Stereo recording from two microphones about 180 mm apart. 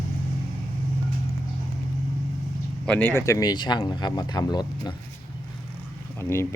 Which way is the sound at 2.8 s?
10° left (ahead or behind).